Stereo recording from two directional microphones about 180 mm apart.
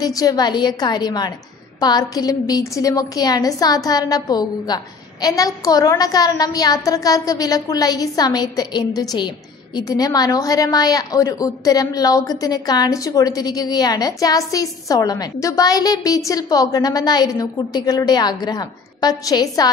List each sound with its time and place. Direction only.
0.0 s a woman's voice: 20° left (ahead or behind)